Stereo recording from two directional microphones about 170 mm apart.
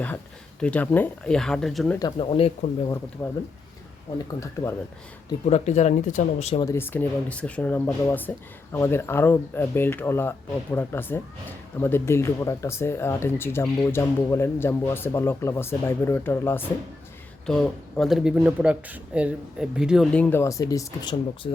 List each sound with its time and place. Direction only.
0.6 s speech: 10° left (ahead or behind)
2.0 s speech: 30° left (ahead or behind)
3.2 s speech: 10° left (ahead or behind)
5.5 s speech: 40° left (ahead or behind)
6.6 s speech: 15° left (ahead or behind)